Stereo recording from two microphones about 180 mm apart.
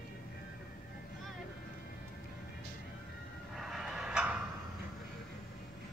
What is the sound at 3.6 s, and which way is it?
Vehicle, centre (ahead or behind).